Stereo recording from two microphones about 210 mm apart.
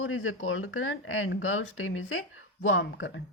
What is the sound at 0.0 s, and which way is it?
Speech, 70° left (ahead or behind).